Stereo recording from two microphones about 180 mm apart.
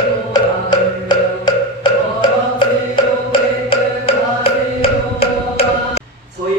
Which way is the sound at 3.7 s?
30° left (ahead or behind).